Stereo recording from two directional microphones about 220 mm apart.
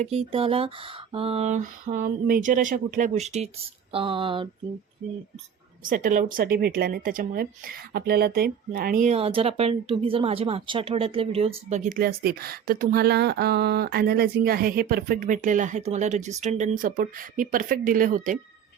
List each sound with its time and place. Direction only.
0.0 s speech: 25° right (ahead or behind)
5.8 s speech: 40° right (ahead or behind)